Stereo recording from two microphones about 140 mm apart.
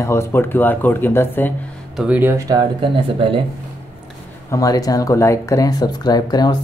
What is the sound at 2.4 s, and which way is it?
Speech, 35° right (ahead or behind).